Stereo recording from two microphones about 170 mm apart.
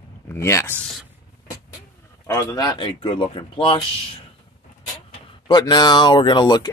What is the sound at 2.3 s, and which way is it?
Speech, 20° left (ahead or behind).